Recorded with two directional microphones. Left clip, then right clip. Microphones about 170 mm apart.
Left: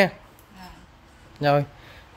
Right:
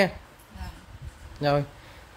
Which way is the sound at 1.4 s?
15° left (ahead or behind).